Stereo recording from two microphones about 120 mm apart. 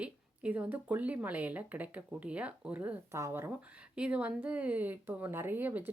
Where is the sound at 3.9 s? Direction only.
10° right (ahead or behind).